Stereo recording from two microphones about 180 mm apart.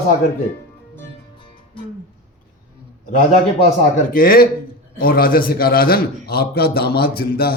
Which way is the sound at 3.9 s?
50° left (ahead or behind).